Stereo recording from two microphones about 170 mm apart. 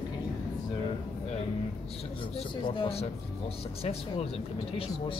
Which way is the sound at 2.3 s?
30° left (ahead or behind).